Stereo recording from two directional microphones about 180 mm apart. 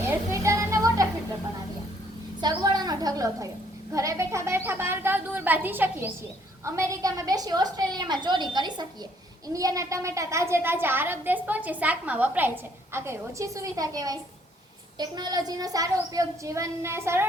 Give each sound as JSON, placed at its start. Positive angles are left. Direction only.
{"t": 0.0, "sound": "music", "side_deg": -15}
{"t": 2.4, "sound": "a woman's voice", "side_deg": -20}